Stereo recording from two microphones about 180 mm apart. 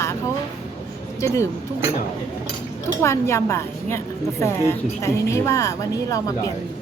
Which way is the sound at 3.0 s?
15° left (ahead or behind).